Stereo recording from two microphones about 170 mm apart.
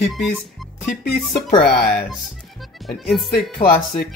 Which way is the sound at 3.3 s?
65° left (ahead or behind).